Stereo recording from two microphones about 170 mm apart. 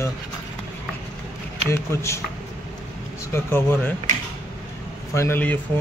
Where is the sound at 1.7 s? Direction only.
15° left (ahead or behind).